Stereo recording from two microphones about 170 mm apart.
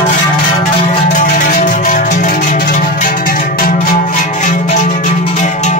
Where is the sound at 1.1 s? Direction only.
50° left (ahead or behind).